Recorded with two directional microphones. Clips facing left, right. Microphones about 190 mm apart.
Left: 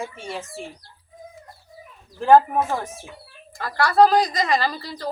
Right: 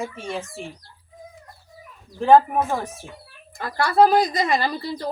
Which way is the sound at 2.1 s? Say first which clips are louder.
Even; centre (ahead or behind).